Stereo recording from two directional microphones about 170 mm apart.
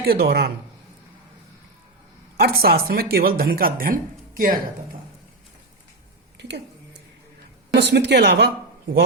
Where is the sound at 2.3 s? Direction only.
65° right (ahead or behind).